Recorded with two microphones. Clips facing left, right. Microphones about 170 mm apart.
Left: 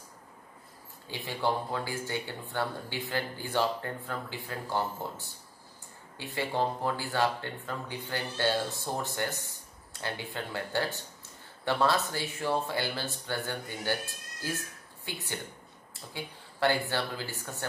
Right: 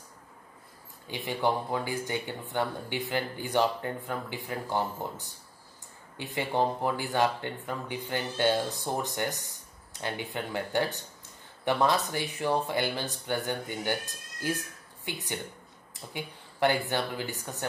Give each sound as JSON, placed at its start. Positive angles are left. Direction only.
{"t": 1.1, "sound": "speech", "side_deg": -15}